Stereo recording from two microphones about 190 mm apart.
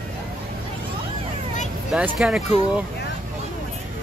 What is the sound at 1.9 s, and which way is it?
Speech, 5° right (ahead or behind).